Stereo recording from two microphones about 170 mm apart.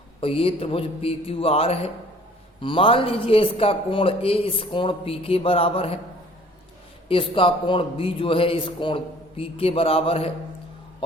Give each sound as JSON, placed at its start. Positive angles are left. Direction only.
{"t": 0.2, "sound": "a man's voice", "side_deg": 35}
{"t": 7.1, "sound": "a man's voice", "side_deg": 30}